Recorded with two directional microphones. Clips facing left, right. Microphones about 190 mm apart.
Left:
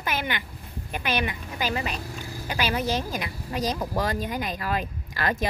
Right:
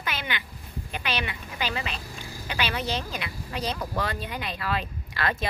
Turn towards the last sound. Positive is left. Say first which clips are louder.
# left 2 dB
turn(degrees=40)  # may be behind; listen again after turning